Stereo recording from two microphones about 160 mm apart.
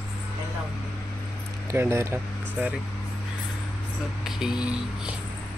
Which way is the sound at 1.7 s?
15° right (ahead or behind).